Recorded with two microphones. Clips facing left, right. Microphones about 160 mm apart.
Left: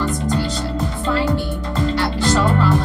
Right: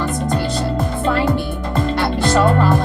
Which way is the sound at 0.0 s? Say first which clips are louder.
Right 1 dB; 55° right (ahead or behind).